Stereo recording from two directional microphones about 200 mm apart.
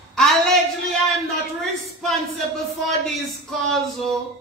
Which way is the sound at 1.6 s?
Centre (ahead or behind).